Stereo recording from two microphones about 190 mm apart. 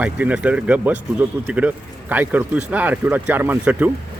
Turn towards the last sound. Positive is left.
turn(degrees=-10)  # may be behind; listen again after turning